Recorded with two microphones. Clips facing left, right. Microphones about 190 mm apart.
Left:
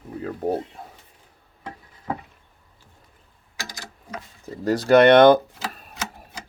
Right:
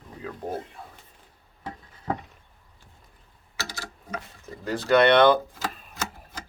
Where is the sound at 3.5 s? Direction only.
15° left (ahead or behind).